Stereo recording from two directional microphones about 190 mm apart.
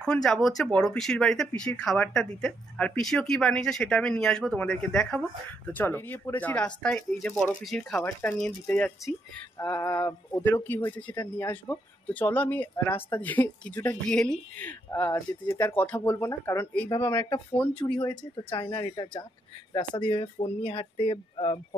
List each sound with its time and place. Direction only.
0.0 s speech: 5° left (ahead or behind)
17.9 s speech: 25° left (ahead or behind)